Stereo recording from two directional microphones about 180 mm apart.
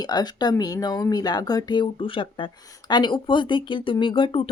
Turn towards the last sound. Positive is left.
turn(degrees=30)  # may be behind; listen again after turning